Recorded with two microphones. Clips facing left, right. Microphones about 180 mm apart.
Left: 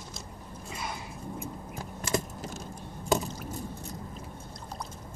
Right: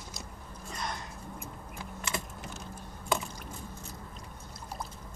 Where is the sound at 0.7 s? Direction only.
5° left (ahead or behind).